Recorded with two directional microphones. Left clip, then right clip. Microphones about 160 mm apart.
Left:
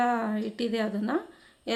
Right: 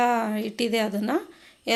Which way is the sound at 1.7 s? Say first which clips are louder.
Right 6 dB; 20° right (ahead or behind).